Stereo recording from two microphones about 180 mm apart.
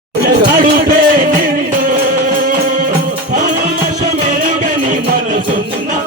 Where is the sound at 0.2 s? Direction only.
55° right (ahead or behind).